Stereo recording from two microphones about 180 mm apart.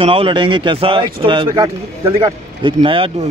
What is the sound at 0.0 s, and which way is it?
Speech, 30° right (ahead or behind).